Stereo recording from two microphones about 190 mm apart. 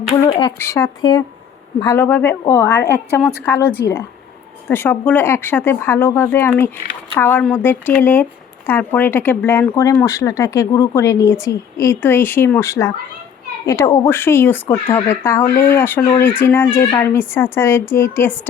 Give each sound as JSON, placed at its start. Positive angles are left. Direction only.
{"t": 0.3, "sound": "speech", "side_deg": 25}